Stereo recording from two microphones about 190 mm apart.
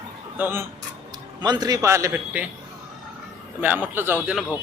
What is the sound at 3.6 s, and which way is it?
Speech, 10° right (ahead or behind).